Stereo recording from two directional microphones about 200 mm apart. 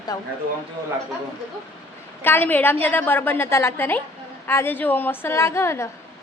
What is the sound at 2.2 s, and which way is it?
A woman's voice, 10° left (ahead or behind).